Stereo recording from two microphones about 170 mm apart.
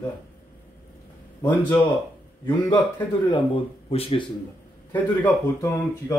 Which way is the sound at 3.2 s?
30° left (ahead or behind).